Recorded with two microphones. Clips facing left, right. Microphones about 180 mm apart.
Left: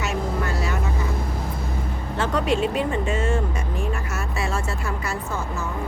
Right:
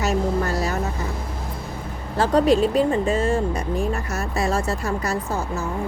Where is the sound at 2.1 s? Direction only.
35° right (ahead or behind).